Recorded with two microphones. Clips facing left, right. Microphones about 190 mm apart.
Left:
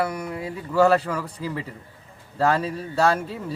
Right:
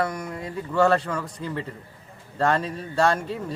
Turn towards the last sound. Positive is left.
turn(degrees=5)  # may be behind; listen again after turning